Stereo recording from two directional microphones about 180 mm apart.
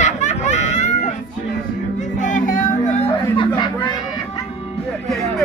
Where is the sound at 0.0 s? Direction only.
40° left (ahead or behind).